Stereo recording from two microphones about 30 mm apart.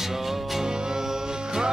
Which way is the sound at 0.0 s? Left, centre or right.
Centre.